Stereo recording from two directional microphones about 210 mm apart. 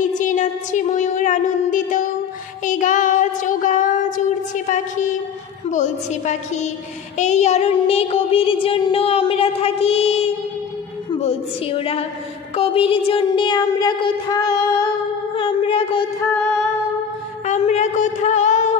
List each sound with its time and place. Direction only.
0.1 s a sound: 35° left (ahead or behind)
2.6 s child singing: 35° left (ahead or behind)
4.6 s a sound: 35° left (ahead or behind)
5.7 s a woman's voice: 35° left (ahead or behind)
7.2 s child singing: 35° left (ahead or behind)
17.5 s a woman's voice: 35° left (ahead or behind)